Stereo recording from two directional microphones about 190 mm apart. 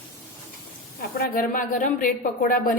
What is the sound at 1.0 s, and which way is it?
A woman's voice, 50° left (ahead or behind).